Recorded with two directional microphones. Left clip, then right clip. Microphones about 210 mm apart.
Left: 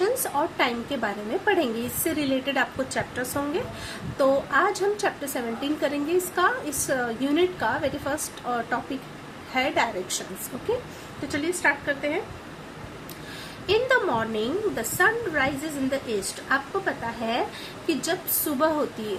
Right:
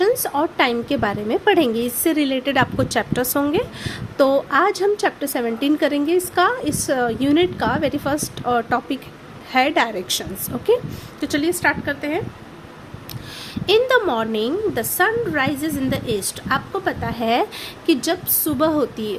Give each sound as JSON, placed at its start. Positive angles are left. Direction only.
{"t": 0.0, "sound": "a woman's voice", "side_deg": -45}
{"t": 11.3, "sound": "a woman's voice", "side_deg": -50}
{"t": 13.7, "sound": "a woman's voice", "side_deg": -50}